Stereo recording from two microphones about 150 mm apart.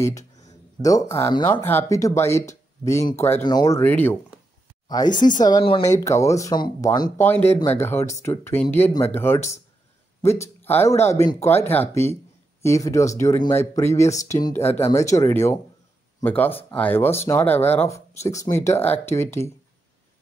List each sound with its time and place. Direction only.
0.8 s speech: 20° left (ahead or behind)
4.8 s speech: 25° left (ahead or behind)